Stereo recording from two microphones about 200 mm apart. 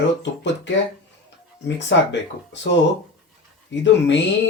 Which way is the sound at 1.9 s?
65° left (ahead or behind).